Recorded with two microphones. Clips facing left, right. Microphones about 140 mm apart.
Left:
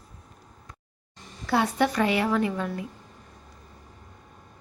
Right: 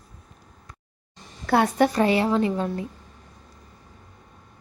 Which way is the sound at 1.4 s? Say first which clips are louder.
Right 4 dB; 50° right (ahead or behind).